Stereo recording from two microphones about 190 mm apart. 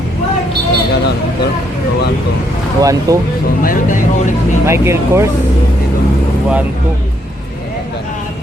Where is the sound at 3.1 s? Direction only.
20° right (ahead or behind).